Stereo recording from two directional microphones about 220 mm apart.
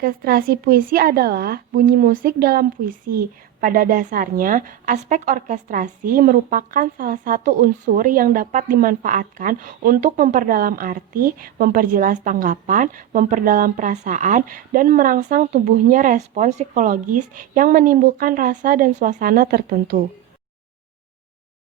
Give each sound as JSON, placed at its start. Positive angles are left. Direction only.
{"t": 0.0, "sound": "speech", "side_deg": -40}